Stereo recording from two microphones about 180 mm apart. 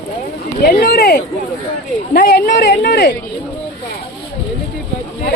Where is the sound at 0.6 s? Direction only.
55° left (ahead or behind).